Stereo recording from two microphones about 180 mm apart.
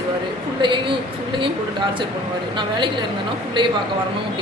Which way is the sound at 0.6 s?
25° right (ahead or behind).